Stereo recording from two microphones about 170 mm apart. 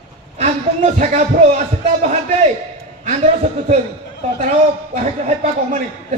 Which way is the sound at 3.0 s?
40° right (ahead or behind).